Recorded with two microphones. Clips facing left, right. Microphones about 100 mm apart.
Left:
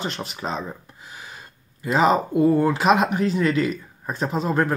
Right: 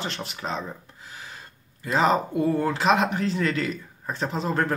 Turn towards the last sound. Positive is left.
turn(degrees=15)  # may be behind; listen again after turning